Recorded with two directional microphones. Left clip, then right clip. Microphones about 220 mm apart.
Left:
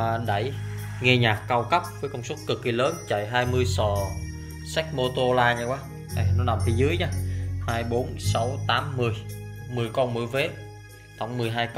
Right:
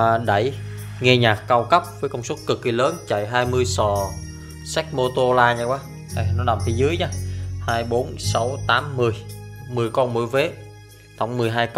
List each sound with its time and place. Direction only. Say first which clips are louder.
0.0 s speech: right 8 dB; 35° right (ahead or behind)